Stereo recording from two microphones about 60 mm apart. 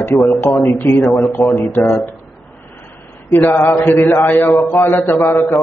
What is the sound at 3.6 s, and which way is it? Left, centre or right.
Mantra, left.